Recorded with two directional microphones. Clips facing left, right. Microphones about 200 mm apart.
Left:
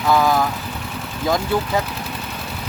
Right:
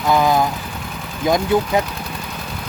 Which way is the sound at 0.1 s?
20° right (ahead or behind).